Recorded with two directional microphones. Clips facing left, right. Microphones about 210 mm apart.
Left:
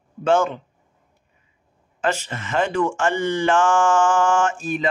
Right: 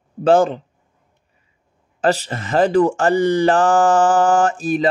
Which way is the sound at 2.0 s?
35° right (ahead or behind).